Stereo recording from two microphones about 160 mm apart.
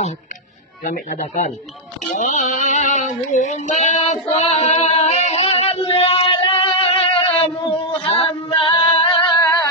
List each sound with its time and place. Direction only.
0.8 s speech: 55° left (ahead or behind)
2.1 s child singing: 45° left (ahead or behind)